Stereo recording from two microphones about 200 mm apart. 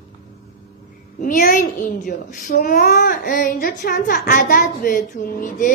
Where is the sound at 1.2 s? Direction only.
40° left (ahead or behind).